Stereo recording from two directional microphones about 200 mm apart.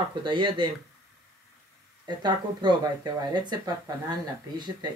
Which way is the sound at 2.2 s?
20° right (ahead or behind).